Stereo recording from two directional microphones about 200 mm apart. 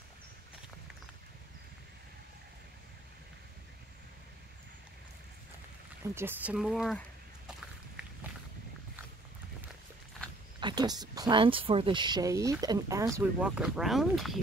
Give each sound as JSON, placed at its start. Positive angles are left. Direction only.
{"t": 6.0, "sound": "speech", "side_deg": -10}
{"t": 10.6, "sound": "speech", "side_deg": -20}